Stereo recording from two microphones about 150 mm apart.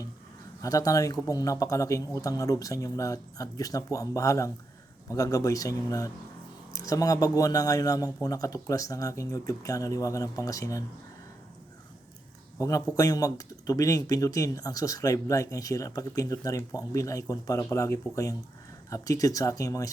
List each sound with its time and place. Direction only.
0.6 s speech: 25° left (ahead or behind)
12.5 s speech: 20° left (ahead or behind)